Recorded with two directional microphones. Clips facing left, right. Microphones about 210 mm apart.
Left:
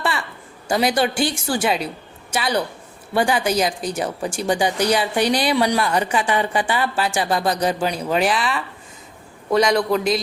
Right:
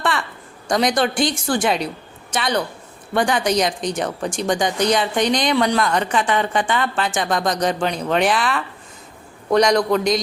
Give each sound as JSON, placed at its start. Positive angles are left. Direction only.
{"t": 0.7, "sound": "a man's voice", "side_deg": 5}